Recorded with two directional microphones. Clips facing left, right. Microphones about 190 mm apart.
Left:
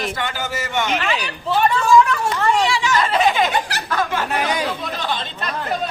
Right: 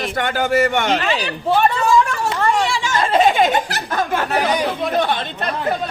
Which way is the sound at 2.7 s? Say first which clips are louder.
Right 1 dB; 45° right (ahead or behind).